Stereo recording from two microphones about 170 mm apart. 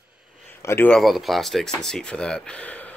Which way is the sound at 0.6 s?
10° left (ahead or behind).